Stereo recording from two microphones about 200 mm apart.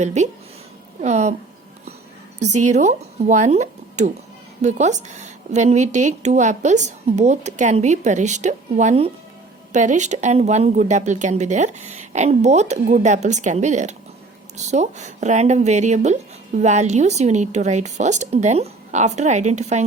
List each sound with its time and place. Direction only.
0.0 s a woman's voice: 35° right (ahead or behind)
2.4 s a woman's voice: 35° right (ahead or behind)